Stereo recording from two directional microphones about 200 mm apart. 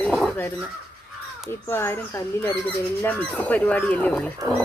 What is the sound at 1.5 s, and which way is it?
Speech, 10° left (ahead or behind).